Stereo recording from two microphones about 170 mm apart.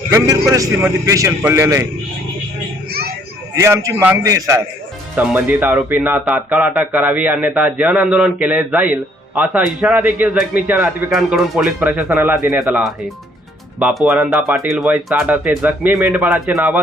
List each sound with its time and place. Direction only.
0.1 s a man's voice: 20° right (ahead or behind)
3.5 s a man's voice: 20° right (ahead or behind)
5.1 s speech: 10° right (ahead or behind)